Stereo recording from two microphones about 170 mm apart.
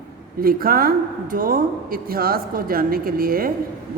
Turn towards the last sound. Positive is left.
turn(degrees=-60)  # may be behind; listen again after turning